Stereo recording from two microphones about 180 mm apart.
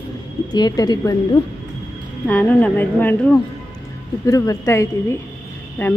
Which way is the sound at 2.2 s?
10° left (ahead or behind).